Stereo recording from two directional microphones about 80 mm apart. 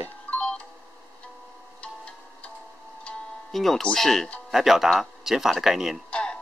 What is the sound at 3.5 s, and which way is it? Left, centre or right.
Speech, centre.